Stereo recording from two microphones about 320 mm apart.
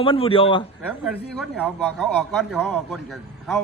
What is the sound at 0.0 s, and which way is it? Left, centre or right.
Speech, centre.